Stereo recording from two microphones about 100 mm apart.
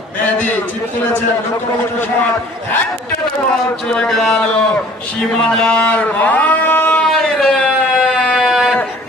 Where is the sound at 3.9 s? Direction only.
5° left (ahead or behind).